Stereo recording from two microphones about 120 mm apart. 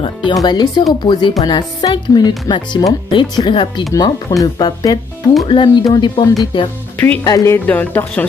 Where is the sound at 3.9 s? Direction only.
30° left (ahead or behind).